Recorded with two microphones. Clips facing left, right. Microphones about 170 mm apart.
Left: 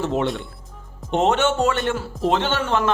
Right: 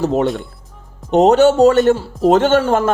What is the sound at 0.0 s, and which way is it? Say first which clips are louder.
A man's voice: right 6 dB; 40° right (ahead or behind).